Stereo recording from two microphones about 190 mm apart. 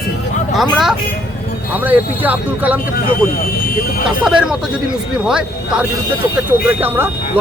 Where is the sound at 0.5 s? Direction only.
Centre (ahead or behind).